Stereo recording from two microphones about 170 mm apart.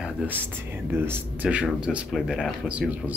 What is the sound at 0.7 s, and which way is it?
Speech, 15° right (ahead or behind).